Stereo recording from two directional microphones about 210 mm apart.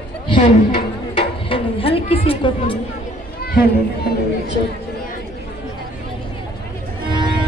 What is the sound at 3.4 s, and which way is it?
Run, 45° left (ahead or behind).